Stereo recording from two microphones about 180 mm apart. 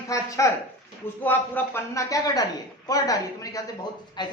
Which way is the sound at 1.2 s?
10° left (ahead or behind).